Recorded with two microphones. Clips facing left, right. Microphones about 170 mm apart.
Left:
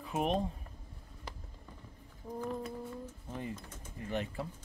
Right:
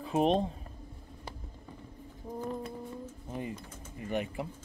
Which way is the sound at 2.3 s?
25° right (ahead or behind).